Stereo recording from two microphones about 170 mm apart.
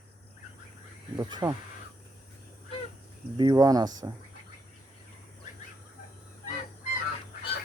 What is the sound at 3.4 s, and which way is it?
Speech, 25° right (ahead or behind).